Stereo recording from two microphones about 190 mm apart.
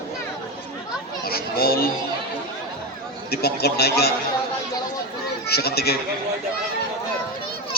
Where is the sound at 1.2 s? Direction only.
55° left (ahead or behind).